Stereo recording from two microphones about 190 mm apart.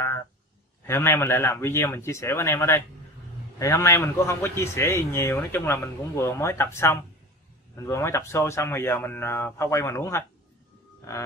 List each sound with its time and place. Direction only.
0.8 s a man's voice: 15° left (ahead or behind)
11.0 s grunt: 15° left (ahead or behind)